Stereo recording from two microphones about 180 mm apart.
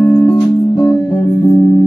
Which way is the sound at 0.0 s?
20° left (ahead or behind).